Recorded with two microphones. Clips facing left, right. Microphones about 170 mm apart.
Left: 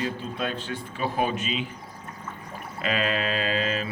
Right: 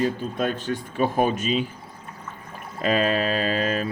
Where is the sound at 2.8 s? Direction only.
40° right (ahead or behind).